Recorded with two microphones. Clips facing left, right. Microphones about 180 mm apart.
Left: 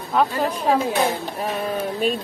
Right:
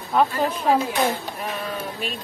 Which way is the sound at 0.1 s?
5° right (ahead or behind).